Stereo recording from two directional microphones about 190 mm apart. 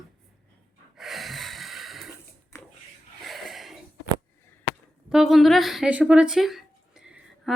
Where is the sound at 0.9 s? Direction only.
Centre (ahead or behind).